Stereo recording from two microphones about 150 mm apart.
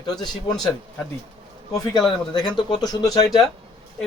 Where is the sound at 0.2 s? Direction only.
30° left (ahead or behind).